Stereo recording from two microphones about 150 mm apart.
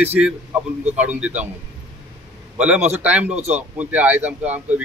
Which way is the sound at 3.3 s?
45° right (ahead or behind).